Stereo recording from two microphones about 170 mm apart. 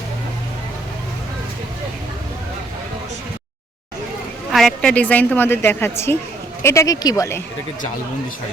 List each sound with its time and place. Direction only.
4.5 s a woman's voice: 5° left (ahead or behind)